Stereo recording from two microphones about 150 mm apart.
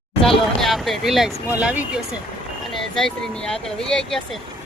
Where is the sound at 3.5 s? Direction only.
5° left (ahead or behind).